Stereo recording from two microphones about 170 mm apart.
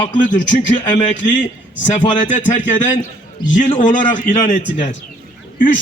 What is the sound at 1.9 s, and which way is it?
Speech, 50° left (ahead or behind).